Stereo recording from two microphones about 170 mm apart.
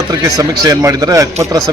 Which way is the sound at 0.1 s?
20° right (ahead or behind).